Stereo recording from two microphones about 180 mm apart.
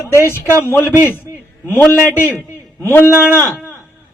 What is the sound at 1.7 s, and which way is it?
Speech, 10° left (ahead or behind).